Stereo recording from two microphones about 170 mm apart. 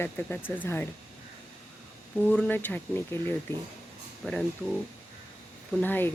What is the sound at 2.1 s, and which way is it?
Speech, 5° left (ahead or behind).